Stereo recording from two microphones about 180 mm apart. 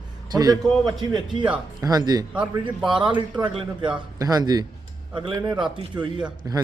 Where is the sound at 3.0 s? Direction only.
25° right (ahead or behind).